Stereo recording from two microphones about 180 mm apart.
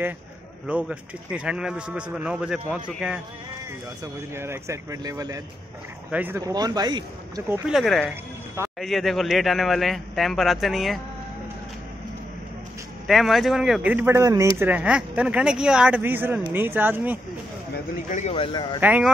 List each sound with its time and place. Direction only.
0.7 s speech: 5° right (ahead or behind)
4.0 s speech: 15° right (ahead or behind)
7.6 s speech: centre (ahead or behind)
13.0 s speech: centre (ahead or behind)
18.1 s speech: 35° left (ahead or behind)
18.8 s speech: 10° right (ahead or behind)